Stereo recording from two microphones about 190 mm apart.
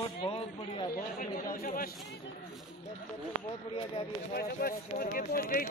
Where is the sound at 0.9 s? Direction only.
45° left (ahead or behind).